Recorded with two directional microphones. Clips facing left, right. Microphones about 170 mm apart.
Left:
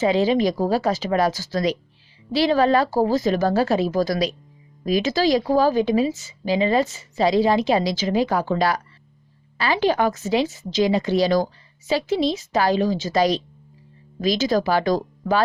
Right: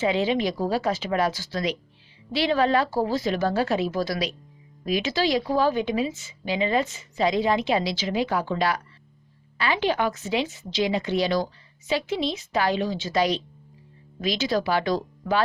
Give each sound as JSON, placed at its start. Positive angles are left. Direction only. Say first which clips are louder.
{"t": 0.0, "sound": "a woman's voice", "louder": "left 5 dB", "side_deg": 40}